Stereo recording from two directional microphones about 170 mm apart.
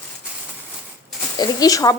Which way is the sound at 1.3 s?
20° left (ahead or behind).